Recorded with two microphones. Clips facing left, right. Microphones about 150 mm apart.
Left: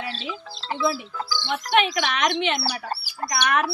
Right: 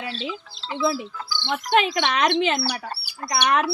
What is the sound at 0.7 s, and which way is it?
Speech, 40° left (ahead or behind).